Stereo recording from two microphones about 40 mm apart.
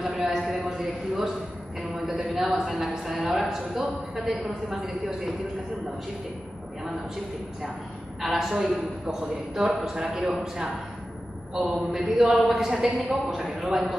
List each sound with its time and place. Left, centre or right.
0.0 s a sound: centre
2.2 s speech: centre
8.2 s speech: centre